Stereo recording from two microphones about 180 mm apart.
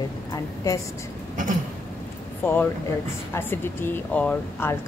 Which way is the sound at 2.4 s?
10° left (ahead or behind).